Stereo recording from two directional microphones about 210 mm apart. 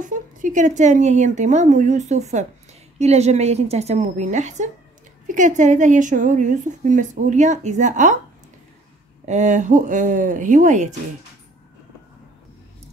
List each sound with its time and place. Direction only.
0.0 s a woman's voice: 40° right (ahead or behind)
9.2 s a woman's voice: 35° right (ahead or behind)